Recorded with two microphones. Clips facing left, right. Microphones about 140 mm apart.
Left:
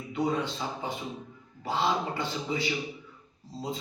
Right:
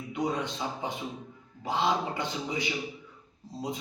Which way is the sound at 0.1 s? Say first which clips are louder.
Left 2 dB; 20° right (ahead or behind).